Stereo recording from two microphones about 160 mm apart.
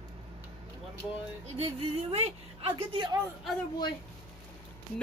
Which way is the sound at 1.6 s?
40° right (ahead or behind).